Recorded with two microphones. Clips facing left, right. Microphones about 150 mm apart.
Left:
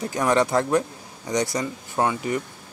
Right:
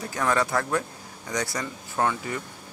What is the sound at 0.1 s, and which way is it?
A man's voice, 20° left (ahead or behind).